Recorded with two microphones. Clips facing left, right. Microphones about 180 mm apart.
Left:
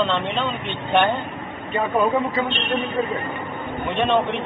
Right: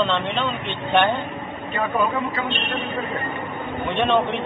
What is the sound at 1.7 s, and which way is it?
Speech, 25° left (ahead or behind).